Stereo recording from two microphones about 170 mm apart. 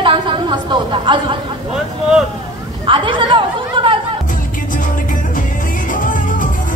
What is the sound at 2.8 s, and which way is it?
A woman's voice, 30° right (ahead or behind).